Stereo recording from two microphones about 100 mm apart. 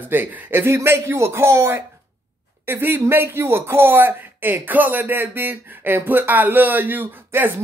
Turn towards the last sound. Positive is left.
turn(degrees=-20)  # may be behind; listen again after turning